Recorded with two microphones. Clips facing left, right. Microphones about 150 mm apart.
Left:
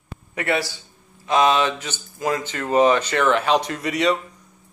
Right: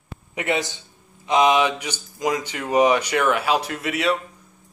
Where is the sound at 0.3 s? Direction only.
20° right (ahead or behind).